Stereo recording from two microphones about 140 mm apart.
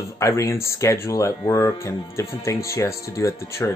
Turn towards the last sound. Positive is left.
turn(degrees=20)  # may be behind; listen again after turning